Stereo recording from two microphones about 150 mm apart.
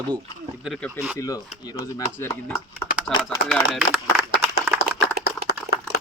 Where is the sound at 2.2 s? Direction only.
10° left (ahead or behind).